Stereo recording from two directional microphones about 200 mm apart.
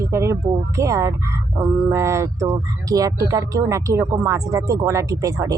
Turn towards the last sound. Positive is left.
turn(degrees=-15)  # may be behind; listen again after turning